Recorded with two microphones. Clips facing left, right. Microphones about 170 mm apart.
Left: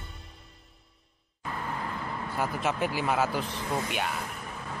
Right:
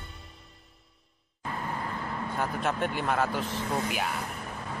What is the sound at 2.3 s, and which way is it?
Speech, 5° left (ahead or behind).